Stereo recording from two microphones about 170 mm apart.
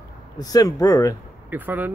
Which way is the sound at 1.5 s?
10° right (ahead or behind).